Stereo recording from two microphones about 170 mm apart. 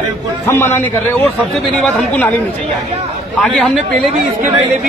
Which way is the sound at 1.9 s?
10° left (ahead or behind).